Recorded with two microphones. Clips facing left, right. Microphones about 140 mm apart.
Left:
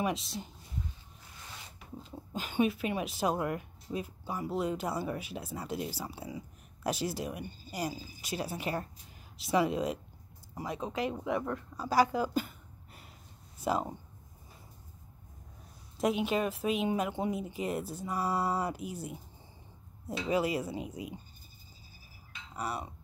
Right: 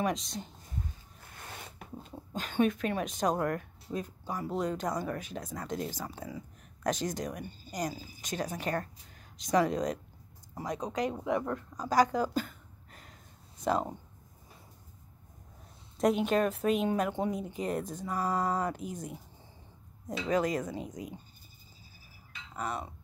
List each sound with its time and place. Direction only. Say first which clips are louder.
0.0 s speech: right 1 dB; 5° left (ahead or behind)
1.3 s zipper: right 4 dB; 55° right (ahead or behind)
2.3 s speech: right 1 dB; 5° left (ahead or behind)
11.7 s a sound: right 1 dB; 10° left (ahead or behind)
13.6 s speech: right 2 dB; 5° left (ahead or behind)
16.0 s speech: right 3 dB; 5° left (ahead or behind)
20.2 s speech: right 1 dB; 10° left (ahead or behind)
22.6 s speech: right 1 dB; 10° left (ahead or behind)